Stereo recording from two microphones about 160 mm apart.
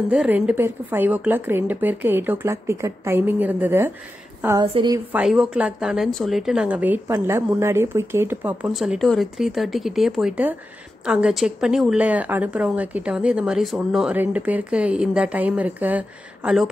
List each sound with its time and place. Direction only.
0.1 s a woman's voice: 5° right (ahead or behind)
4.6 s a woman's voice: 25° right (ahead or behind)
5.1 s a woman's voice: 5° right (ahead or behind)
8.7 s a woman's voice: centre (ahead or behind)